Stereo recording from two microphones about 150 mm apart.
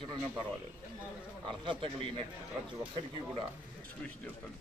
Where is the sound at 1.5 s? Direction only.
35° right (ahead or behind).